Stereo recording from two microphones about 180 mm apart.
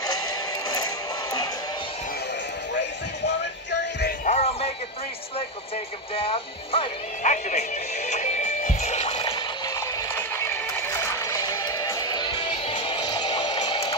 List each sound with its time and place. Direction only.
4.3 s music: 35° left (ahead or behind)
6.1 s speech: 30° left (ahead or behind)
8.1 s music: 40° left (ahead or behind)
10.1 s music: 15° left (ahead or behind)